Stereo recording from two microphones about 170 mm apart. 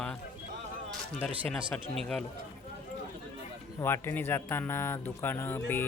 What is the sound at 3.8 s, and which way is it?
Speech, 15° left (ahead or behind).